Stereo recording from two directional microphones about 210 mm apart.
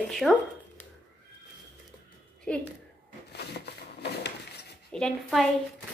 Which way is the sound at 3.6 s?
50° left (ahead or behind).